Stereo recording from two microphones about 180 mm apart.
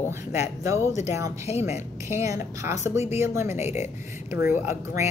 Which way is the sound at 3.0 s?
35° left (ahead or behind).